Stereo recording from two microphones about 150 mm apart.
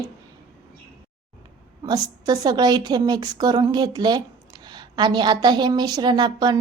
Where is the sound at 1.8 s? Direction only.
25° right (ahead or behind).